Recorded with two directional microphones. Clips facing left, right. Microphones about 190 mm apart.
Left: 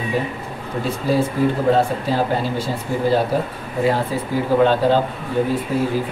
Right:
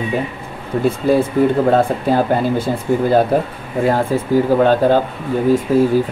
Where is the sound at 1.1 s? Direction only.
55° right (ahead or behind).